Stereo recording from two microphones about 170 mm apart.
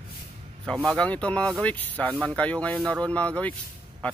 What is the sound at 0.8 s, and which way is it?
Speech, 5° left (ahead or behind).